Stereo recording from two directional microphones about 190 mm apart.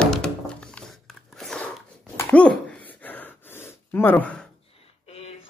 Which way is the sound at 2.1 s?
5° left (ahead or behind).